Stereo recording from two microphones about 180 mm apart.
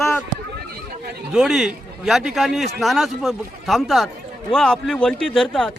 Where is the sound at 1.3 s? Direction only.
5° right (ahead or behind).